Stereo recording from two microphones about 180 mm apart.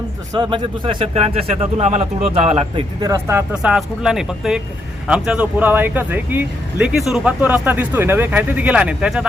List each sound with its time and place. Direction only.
0.3 s speech: 25° right (ahead or behind)
3.0 s speech: 15° right (ahead or behind)
3.5 s speech: 5° right (ahead or behind)